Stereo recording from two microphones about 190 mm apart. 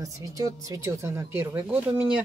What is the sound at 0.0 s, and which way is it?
Speech, 15° right (ahead or behind).